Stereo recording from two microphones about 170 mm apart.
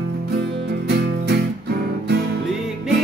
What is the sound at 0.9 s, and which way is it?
Music, 80° right.